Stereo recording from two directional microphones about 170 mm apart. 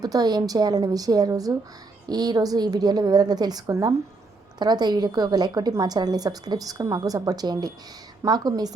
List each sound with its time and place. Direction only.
0.0 s a woman's voice: 20° right (ahead or behind)